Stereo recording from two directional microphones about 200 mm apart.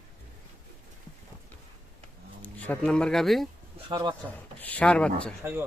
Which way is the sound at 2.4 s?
5° left (ahead or behind).